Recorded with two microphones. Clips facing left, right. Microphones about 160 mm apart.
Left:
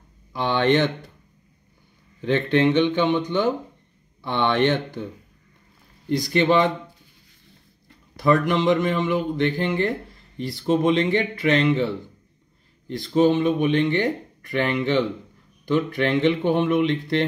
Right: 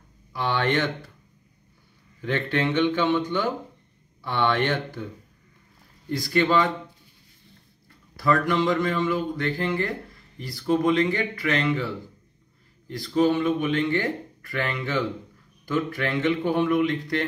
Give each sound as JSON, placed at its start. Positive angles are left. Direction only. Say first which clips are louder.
{"t": 0.3, "sound": "speech", "louder": "left 5 dB", "side_deg": 20}
{"t": 2.2, "sound": "speech", "louder": "left 6 dB", "side_deg": 25}
{"t": 6.0, "sound": "speech", "louder": "left 3 dB", "side_deg": 20}
{"t": 8.2, "sound": "speech", "louder": "left 3 dB", "side_deg": 20}